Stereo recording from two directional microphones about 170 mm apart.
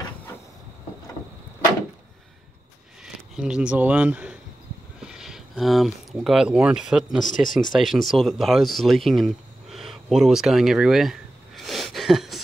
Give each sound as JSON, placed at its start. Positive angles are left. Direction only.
{"t": 3.0, "sound": "a sound", "side_deg": -5}
{"t": 5.0, "sound": "speech", "side_deg": -5}
{"t": 7.2, "sound": "speech", "side_deg": 50}
{"t": 7.7, "sound": "speech", "side_deg": 0}